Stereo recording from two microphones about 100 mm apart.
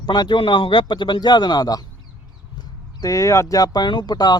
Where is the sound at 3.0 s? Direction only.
30° left (ahead or behind).